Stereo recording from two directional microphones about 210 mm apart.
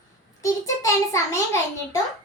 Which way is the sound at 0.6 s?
15° left (ahead or behind).